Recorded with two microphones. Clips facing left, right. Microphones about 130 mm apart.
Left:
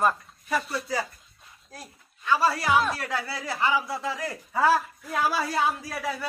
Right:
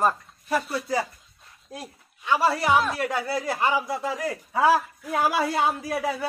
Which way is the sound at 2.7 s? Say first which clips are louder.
Right 1 dB; centre (ahead or behind).